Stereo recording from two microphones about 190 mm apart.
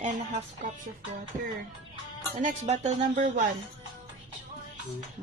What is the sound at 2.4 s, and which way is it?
Speech, 35° right (ahead or behind).